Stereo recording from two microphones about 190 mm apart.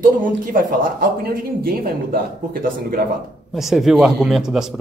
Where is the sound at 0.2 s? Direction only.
45° right (ahead or behind).